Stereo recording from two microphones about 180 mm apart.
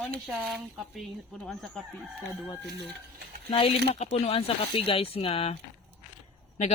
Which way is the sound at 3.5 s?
30° left (ahead or behind).